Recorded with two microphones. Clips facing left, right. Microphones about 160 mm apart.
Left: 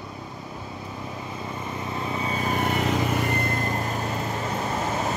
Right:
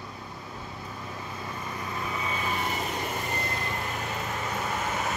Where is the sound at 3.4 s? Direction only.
50° left (ahead or behind).